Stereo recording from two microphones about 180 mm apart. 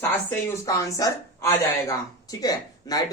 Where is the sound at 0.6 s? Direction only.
20° left (ahead or behind).